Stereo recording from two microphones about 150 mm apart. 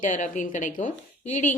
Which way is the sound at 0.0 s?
55° left (ahead or behind).